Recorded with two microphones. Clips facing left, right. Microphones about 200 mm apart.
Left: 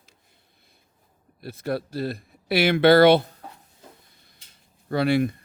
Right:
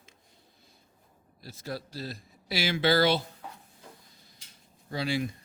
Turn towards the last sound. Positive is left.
turn(degrees=60)  # may be behind; listen again after turning